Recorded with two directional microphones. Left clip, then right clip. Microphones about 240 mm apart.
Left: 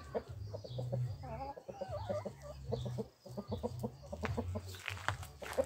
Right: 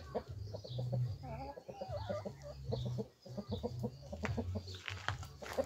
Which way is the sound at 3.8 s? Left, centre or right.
Centre.